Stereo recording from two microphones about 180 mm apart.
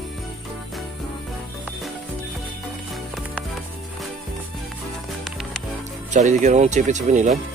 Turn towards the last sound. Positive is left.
turn(degrees=-40)  # may be behind; listen again after turning